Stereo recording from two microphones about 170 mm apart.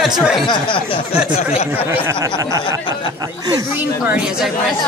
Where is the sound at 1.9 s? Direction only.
15° right (ahead or behind).